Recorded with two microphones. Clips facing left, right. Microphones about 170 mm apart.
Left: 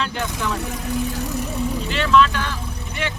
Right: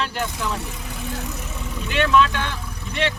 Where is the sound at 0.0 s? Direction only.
5° right (ahead or behind).